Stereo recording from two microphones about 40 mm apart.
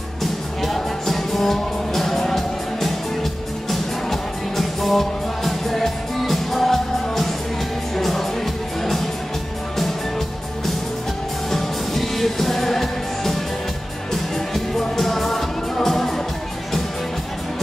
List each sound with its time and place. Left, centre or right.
0.2 s music: centre
11.5 s music: centre